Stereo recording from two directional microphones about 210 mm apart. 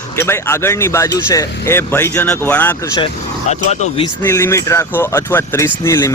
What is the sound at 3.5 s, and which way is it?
Speech, 30° left (ahead or behind).